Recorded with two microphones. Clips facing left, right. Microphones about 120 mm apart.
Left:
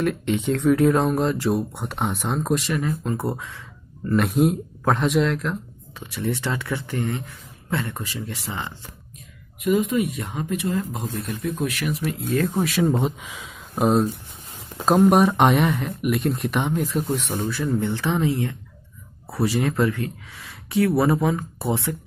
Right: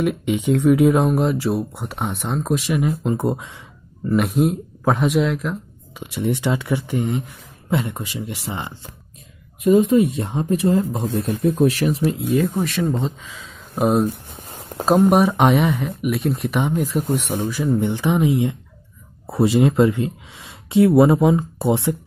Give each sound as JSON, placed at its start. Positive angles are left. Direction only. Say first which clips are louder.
{"t": 0.0, "sound": "speech", "louder": "right 2 dB", "side_deg": -10}
{"t": 2.7, "sound": "speech", "louder": "right 4 dB", "side_deg": -15}
{"t": 4.0, "sound": "speech", "louder": "right 1 dB", "side_deg": -5}
{"t": 5.9, "sound": "speech", "louder": "right 4 dB", "side_deg": -20}
{"t": 12.6, "sound": "speech", "louder": "left 1 dB", "side_deg": 5}
{"t": 12.9, "sound": "speech", "louder": "left 1 dB", "side_deg": 15}
{"t": 13.7, "sound": "speech", "louder": "right 1 dB", "side_deg": 0}
{"t": 14.0, "sound": "a sound", "louder": "right 3 dB", "side_deg": -45}
{"t": 15.0, "sound": "speech", "louder": "right 1 dB", "side_deg": 0}